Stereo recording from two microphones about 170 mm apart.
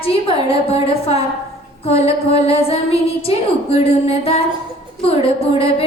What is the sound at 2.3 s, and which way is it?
A woman's voice, 35° left (ahead or behind).